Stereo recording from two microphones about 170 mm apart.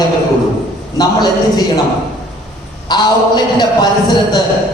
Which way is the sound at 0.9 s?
25° left (ahead or behind).